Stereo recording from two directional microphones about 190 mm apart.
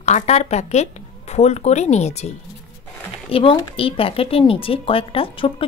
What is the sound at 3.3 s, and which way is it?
Speech, 30° left (ahead or behind).